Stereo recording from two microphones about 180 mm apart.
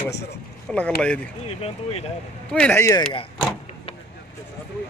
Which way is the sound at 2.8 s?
20° left (ahead or behind).